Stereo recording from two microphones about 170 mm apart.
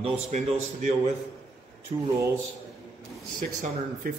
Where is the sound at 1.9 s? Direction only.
30° right (ahead or behind).